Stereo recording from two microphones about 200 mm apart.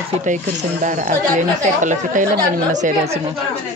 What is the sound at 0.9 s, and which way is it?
Speech, 40° right (ahead or behind).